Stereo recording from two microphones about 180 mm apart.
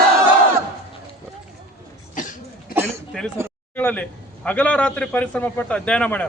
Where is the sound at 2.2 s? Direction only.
45° left (ahead or behind).